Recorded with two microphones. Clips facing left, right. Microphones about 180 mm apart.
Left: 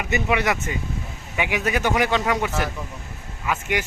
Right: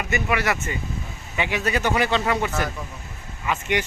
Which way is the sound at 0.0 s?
20° left (ahead or behind).